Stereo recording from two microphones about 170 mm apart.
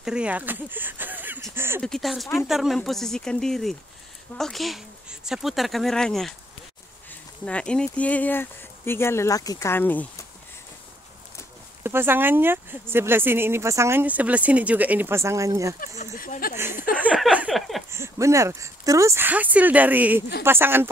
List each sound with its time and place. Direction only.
0.0 s speech: 5° right (ahead or behind)
1.8 s speech: centre (ahead or behind)
11.8 s speech: 15° right (ahead or behind)
16.0 s speech: 50° left (ahead or behind)
16.9 s speech: 5° right (ahead or behind)
17.9 s speech: 15° right (ahead or behind)